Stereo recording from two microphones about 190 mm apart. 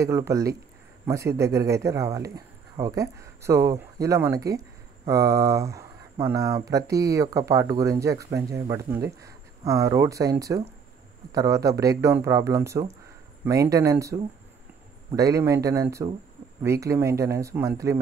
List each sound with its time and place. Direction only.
0.0 s speech: 15° right (ahead or behind)